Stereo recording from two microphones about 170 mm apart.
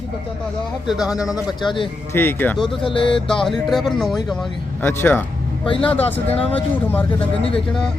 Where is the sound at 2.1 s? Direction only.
10° left (ahead or behind).